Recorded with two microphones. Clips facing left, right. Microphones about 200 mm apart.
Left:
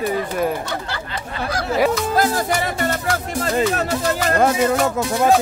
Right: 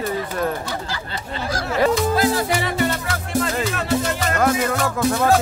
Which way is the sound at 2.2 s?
45° left (ahead or behind).